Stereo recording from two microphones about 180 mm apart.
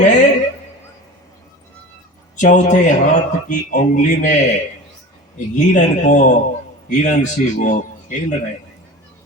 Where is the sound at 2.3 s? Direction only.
45° left (ahead or behind).